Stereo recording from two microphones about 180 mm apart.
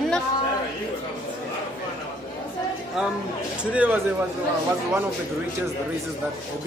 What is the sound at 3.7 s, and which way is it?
Speech, 10° right (ahead or behind).